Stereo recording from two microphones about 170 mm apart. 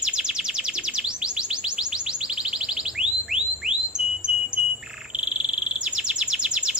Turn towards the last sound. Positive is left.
turn(degrees=-5)  # may be behind; listen again after turning